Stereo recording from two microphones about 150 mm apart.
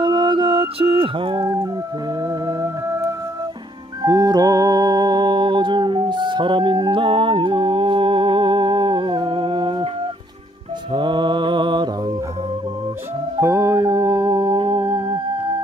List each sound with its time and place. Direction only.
0.0 s music: 30° right (ahead or behind)
10.9 s mantra: 30° right (ahead or behind)
13.4 s music: 20° right (ahead or behind)
14.9 s music: 35° right (ahead or behind)